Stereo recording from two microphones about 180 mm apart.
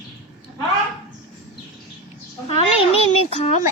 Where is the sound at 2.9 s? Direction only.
35° left (ahead or behind).